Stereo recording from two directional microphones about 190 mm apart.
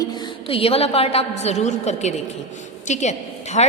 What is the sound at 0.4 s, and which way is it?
A woman's voice, 30° left (ahead or behind).